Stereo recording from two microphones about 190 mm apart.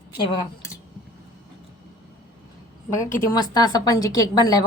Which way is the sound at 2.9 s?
15° left (ahead or behind).